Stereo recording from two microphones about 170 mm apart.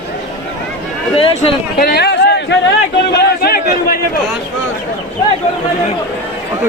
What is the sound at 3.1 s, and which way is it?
Speech, 60° left (ahead or behind).